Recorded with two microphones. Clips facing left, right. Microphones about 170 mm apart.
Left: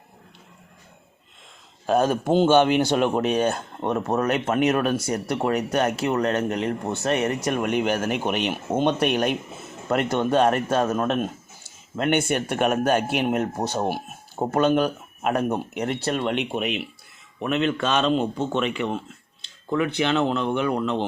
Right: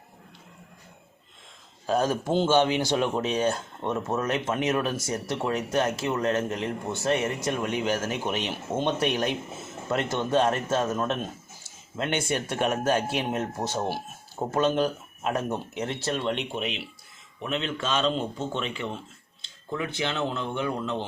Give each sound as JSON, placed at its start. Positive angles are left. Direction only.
{"t": 1.9, "sound": "speech", "side_deg": 60}